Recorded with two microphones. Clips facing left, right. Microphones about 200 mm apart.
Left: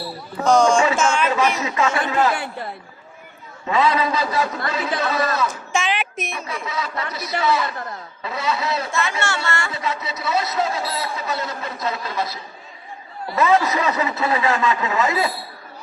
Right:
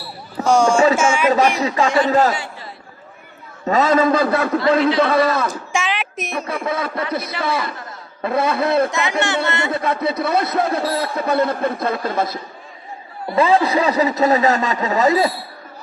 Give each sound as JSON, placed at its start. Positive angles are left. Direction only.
{"t": 0.4, "sound": "speech", "side_deg": -10}
{"t": 0.9, "sound": "a sound", "side_deg": -10}
{"t": 1.5, "sound": "a man's voice", "side_deg": -35}
{"t": 2.3, "sound": "a sound", "side_deg": 55}
{"t": 3.7, "sound": "a man's voice", "side_deg": -45}
{"t": 5.7, "sound": "a sound", "side_deg": 0}
{"t": 6.3, "sound": "a man's voice", "side_deg": -55}
{"t": 8.9, "sound": "speech", "side_deg": -15}
{"t": 9.7, "sound": "a man's voice", "side_deg": -55}
{"t": 13.2, "sound": "a man's voice", "side_deg": -30}